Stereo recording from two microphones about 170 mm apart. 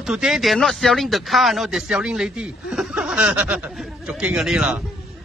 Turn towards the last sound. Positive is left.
turn(degrees=-5)  # may be behind; listen again after turning